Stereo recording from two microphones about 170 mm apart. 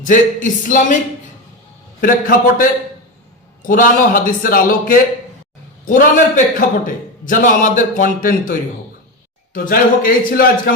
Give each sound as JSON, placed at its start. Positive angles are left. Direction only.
{"t": 0.0, "sound": "a man's voice", "side_deg": 50}
{"t": 2.0, "sound": "a man's voice", "side_deg": 55}